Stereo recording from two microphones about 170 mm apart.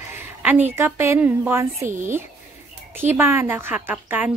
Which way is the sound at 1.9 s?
50° right (ahead or behind).